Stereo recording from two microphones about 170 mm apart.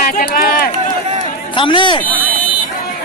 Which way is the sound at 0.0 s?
55° left (ahead or behind).